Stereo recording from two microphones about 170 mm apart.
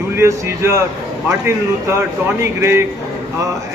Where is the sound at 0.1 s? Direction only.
15° right (ahead or behind).